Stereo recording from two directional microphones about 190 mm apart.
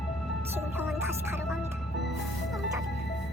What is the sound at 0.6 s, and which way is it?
Music, 10° right (ahead or behind).